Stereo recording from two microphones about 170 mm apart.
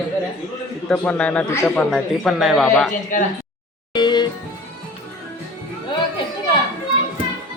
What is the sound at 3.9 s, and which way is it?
Music, 25° left (ahead or behind).